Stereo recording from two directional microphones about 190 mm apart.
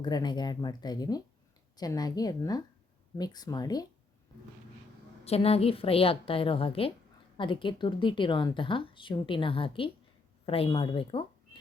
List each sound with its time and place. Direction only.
0.0 s a woman's voice: 20° left (ahead or behind)
5.2 s a woman's voice: 30° left (ahead or behind)